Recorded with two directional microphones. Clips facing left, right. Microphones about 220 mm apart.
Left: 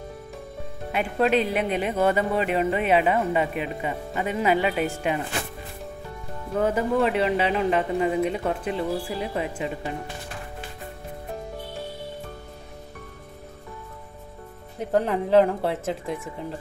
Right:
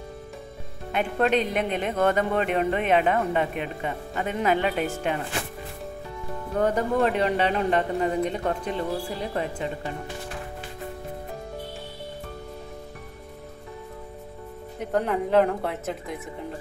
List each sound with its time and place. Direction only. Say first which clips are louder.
0.9 s speech: left 1 dB; 5° left (ahead or behind)
6.5 s speech: left 1 dB; 5° left (ahead or behind)
14.9 s a woman's voice: left 2 dB; 30° left (ahead or behind)